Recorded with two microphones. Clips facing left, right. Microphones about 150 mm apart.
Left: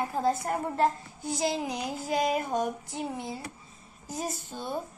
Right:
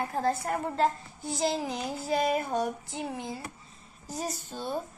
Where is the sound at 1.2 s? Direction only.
Centre (ahead or behind).